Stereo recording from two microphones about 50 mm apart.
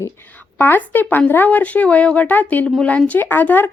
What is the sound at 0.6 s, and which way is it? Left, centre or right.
Speech, left.